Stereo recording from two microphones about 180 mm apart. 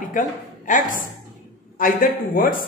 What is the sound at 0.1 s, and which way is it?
A woman's voice, 45° left (ahead or behind).